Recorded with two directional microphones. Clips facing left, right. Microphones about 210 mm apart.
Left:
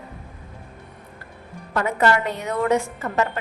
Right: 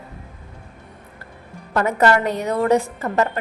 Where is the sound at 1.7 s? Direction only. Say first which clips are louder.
Right 3 dB; 45° right (ahead or behind).